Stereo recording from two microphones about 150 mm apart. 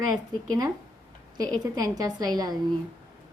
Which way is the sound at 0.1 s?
25° right (ahead or behind).